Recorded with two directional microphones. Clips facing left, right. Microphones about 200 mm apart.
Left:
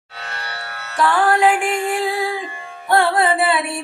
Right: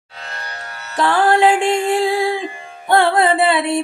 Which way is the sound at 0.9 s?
25° right (ahead or behind).